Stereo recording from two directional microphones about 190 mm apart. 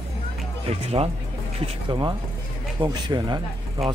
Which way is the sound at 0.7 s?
30° right (ahead or behind).